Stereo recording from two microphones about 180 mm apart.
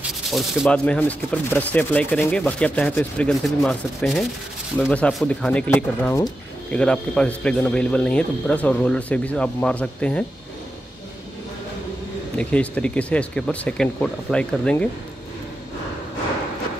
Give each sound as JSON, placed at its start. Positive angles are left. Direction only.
{"t": 0.3, "sound": "speech", "side_deg": 0}
{"t": 12.4, "sound": "speech", "side_deg": 5}